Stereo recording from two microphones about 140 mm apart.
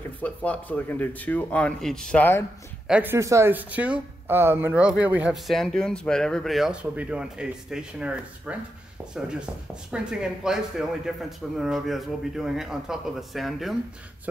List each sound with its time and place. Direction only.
0.2 s speech: 10° left (ahead or behind)
2.9 s speech: 15° right (ahead or behind)
5.5 s a man's voice: 5° left (ahead or behind)
9.8 s a man's voice: 5° right (ahead or behind)